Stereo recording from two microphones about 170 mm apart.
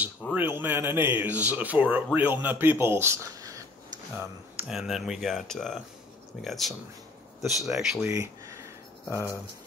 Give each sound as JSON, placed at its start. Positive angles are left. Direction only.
{"t": 0.2, "sound": "speech", "side_deg": -10}
{"t": 4.6, "sound": "speech", "side_deg": -5}
{"t": 8.1, "sound": "a sound", "side_deg": -15}